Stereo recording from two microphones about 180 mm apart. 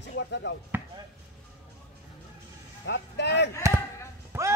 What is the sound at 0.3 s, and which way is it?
Speech, 75° left (ahead or behind).